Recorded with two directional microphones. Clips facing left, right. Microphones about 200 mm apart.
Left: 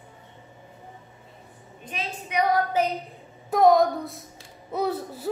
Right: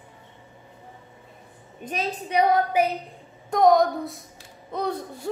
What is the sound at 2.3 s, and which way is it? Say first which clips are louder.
Female singing: right 3 dB; 30° right (ahead or behind).